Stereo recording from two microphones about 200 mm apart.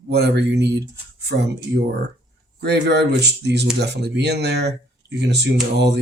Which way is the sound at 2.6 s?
55° right (ahead or behind).